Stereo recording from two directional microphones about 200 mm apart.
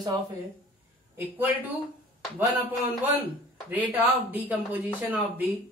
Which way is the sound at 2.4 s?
10° right (ahead or behind).